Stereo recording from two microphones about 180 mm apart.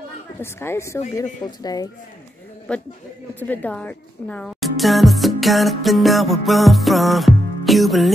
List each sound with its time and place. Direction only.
0.4 s speech: 15° left (ahead or behind)
2.7 s a woman's voice: 5° left (ahead or behind)